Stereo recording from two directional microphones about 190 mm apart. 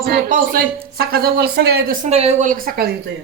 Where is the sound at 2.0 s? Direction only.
35° right (ahead or behind); by 2.9 s 50° right (ahead or behind).